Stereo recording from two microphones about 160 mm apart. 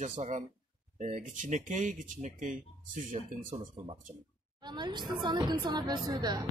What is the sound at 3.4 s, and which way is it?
Speech, 35° right (ahead or behind).